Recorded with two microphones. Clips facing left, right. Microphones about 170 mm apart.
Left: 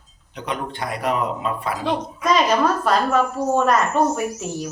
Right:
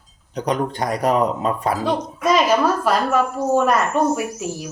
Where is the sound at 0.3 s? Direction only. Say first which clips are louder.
Right 6 dB; 40° right (ahead or behind).